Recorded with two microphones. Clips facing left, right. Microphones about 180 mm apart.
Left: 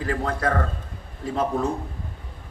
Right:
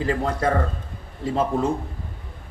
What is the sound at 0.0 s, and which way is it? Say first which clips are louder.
Speech: right 2 dB; 25° right (ahead or behind).